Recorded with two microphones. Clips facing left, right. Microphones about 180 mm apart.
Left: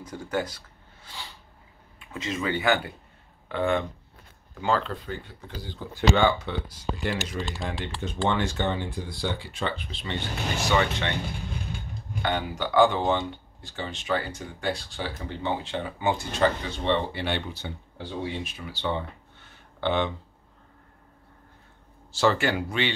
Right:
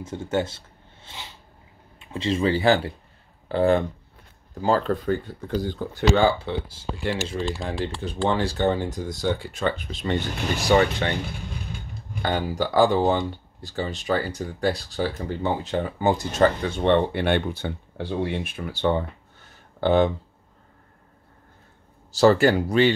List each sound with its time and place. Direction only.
0.0 s speech: 25° right (ahead or behind)
12.2 s speech: 35° right (ahead or behind)
22.1 s speech: 40° right (ahead or behind)